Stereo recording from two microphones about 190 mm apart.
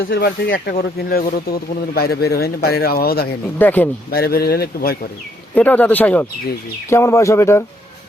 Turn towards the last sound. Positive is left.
turn(degrees=15)  # may be behind; listen again after turning